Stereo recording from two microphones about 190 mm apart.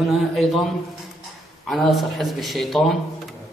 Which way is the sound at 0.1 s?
Centre (ahead or behind).